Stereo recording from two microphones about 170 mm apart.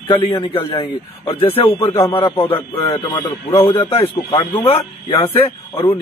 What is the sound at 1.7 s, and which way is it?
Speech, 15° left (ahead or behind).